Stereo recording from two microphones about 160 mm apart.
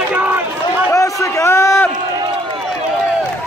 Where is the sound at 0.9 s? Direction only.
20° left (ahead or behind).